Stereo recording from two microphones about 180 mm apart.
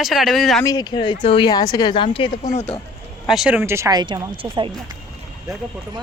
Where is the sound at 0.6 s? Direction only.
20° left (ahead or behind).